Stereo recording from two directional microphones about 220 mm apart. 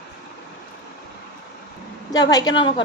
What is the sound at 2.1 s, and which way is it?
Speech, 15° left (ahead or behind).